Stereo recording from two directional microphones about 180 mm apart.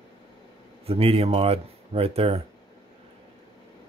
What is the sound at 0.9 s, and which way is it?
Speech, 30° right (ahead or behind).